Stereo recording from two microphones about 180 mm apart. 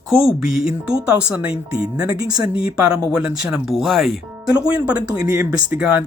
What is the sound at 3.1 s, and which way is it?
Speech, 5° right (ahead or behind).